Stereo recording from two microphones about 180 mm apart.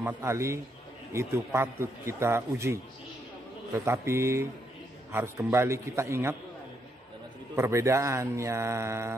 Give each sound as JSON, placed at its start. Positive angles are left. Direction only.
{"t": 0.0, "sound": "a man's voice", "side_deg": -15}
{"t": 7.5, "sound": "a man's voice", "side_deg": -15}